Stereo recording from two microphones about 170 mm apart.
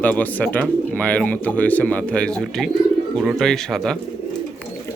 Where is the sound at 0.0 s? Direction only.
10° left (ahead or behind).